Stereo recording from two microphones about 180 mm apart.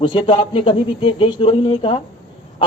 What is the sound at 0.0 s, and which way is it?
Speech, 30° left (ahead or behind).